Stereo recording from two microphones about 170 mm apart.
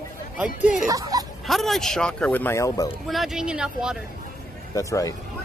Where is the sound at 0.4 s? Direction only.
5° right (ahead or behind).